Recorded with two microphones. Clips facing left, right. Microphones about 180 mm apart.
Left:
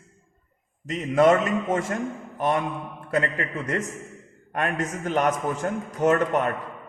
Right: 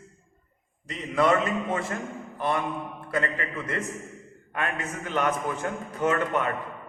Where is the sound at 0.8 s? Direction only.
45° left (ahead or behind).